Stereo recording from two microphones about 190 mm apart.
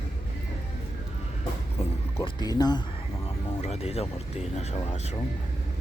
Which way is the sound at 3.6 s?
35° left (ahead or behind).